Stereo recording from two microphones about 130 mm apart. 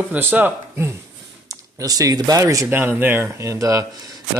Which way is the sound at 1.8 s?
30° right (ahead or behind).